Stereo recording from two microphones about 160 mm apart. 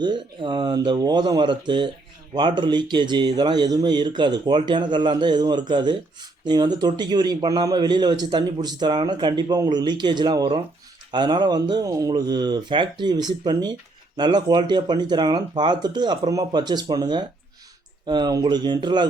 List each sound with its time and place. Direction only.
0.0 s a man's voice: 30° right (ahead or behind)